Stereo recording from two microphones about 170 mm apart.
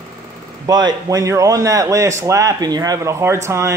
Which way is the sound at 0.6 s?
20° right (ahead or behind).